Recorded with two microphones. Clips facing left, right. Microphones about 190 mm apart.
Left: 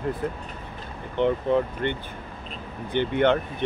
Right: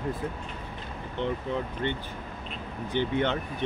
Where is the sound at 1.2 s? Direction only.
60° left (ahead or behind).